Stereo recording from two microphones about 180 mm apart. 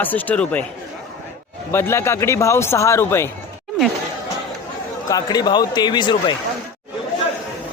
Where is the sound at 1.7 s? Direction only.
15° left (ahead or behind).